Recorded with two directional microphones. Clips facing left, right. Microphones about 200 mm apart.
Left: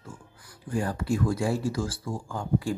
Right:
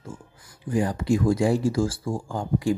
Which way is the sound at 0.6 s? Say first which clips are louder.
Right 5 dB; 15° right (ahead or behind).